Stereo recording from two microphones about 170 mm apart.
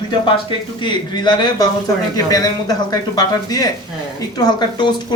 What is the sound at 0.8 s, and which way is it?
Speech, 25° left (ahead or behind).